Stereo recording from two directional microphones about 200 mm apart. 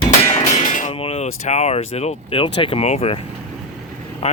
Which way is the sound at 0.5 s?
40° left (ahead or behind).